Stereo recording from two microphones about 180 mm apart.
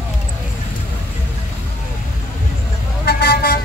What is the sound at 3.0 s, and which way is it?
Vehicle, 60° left (ahead or behind).